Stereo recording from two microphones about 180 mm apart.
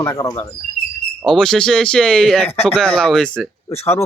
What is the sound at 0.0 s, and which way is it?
Speech, 15° left (ahead or behind).